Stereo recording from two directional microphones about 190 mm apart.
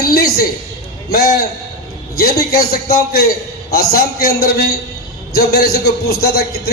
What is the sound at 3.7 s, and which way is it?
A man's voice, 50° left (ahead or behind).